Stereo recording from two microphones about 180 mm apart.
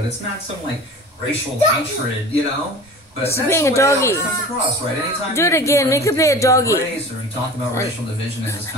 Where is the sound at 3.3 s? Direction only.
15° left (ahead or behind).